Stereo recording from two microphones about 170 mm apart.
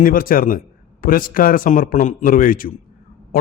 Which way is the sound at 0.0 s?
55° left (ahead or behind).